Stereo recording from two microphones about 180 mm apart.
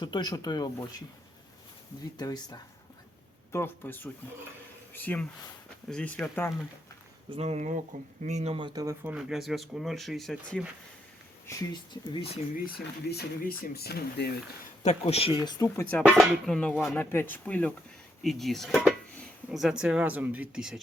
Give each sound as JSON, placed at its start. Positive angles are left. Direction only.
{"t": 0.0, "sound": "speech", "side_deg": 25}
{"t": 2.1, "sound": "speech", "side_deg": 20}
{"t": 7.3, "sound": "speech", "side_deg": -35}
{"t": 9.1, "sound": "speech", "side_deg": -5}
{"t": 11.4, "sound": "speech", "side_deg": 25}
{"t": 13.1, "sound": "speech", "side_deg": 60}
{"t": 14.8, "sound": "speech", "side_deg": 35}
{"t": 15.7, "sound": "speech", "side_deg": 10}